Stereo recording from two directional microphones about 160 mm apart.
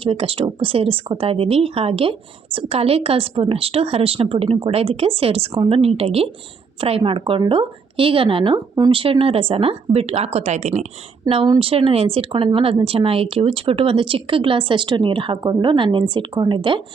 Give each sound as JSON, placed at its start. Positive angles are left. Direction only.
{"t": 0.0, "sound": "speech", "side_deg": -35}